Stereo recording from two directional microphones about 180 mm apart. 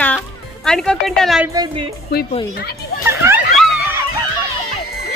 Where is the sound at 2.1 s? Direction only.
60° left (ahead or behind).